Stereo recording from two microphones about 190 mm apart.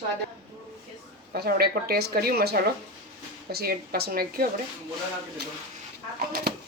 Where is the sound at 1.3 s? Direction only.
55° right (ahead or behind).